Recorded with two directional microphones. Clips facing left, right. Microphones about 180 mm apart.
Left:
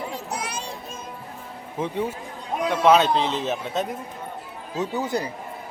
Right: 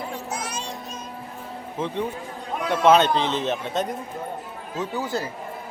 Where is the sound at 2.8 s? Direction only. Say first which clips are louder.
Right 1 dB; centre (ahead or behind).